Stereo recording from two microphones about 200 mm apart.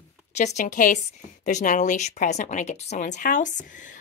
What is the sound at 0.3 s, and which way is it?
A woman's voice, 35° left (ahead or behind).